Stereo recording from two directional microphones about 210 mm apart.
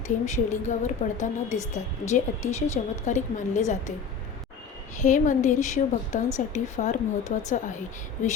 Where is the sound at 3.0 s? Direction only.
35° left (ahead or behind).